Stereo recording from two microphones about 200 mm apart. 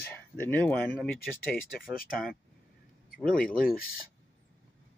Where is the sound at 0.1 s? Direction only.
10° left (ahead or behind).